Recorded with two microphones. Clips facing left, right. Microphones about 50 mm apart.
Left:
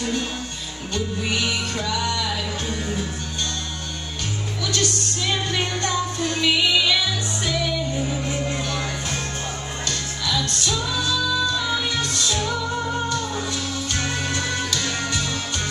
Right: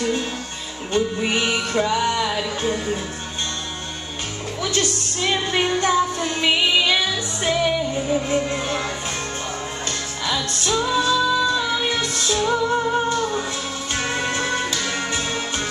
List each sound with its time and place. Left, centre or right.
0.0 s music: right
4.6 s music: right
9.8 s music: right